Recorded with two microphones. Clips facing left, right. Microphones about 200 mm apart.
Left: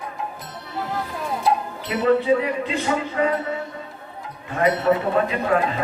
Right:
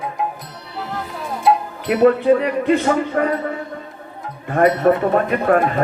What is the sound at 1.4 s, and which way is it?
Speech, 55° right (ahead or behind).